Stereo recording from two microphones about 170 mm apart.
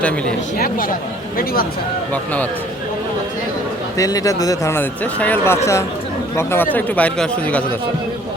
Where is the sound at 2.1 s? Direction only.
10° left (ahead or behind).